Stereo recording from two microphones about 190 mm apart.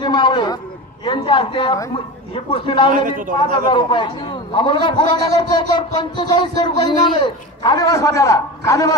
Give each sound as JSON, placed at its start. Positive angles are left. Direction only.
{"t": 0.0, "sound": "a man's voice", "side_deg": 25}
{"t": 2.9, "sound": "a man's voice", "side_deg": -45}
{"t": 3.7, "sound": "a man's voice", "side_deg": 25}